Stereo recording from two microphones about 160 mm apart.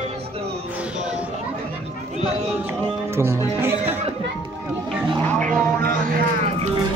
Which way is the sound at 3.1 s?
15° right (ahead or behind).